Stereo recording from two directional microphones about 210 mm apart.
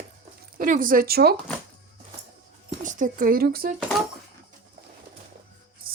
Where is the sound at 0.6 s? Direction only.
40° right (ahead or behind).